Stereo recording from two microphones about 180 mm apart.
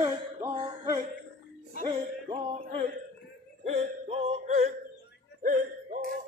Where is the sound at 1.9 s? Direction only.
30° right (ahead or behind).